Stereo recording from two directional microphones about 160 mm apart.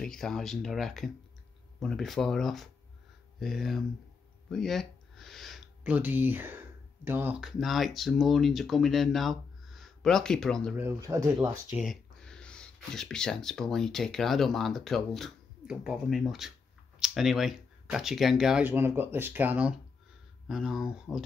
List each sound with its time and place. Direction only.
0.0 s speech: 5° left (ahead or behind)
10.8 s speech: 20° right (ahead or behind)
11.8 s speech: centre (ahead or behind)